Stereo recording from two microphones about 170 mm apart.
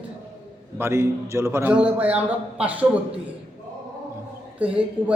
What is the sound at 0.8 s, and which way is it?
Speech, 15° right (ahead or behind).